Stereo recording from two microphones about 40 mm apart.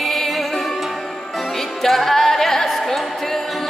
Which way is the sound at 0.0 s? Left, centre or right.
Centre.